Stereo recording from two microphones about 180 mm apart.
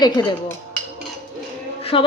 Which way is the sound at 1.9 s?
30° left (ahead or behind).